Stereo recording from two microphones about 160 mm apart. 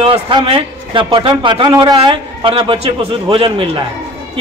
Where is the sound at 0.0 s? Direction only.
30° right (ahead or behind).